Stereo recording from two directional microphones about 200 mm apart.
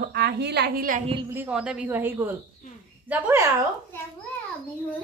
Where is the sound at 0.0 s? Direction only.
55° right (ahead or behind).